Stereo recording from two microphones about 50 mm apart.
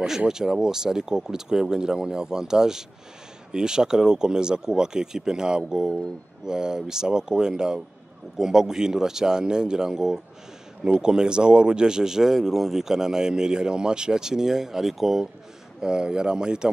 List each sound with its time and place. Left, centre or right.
0.3 s speech: centre